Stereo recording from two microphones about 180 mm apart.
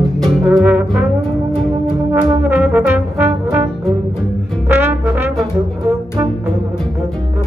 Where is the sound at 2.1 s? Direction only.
20° right (ahead or behind).